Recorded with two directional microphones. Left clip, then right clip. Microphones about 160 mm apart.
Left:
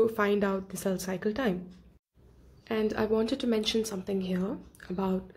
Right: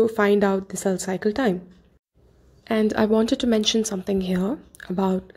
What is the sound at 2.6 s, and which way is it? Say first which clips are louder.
Speech: right 8 dB; 45° right (ahead or behind).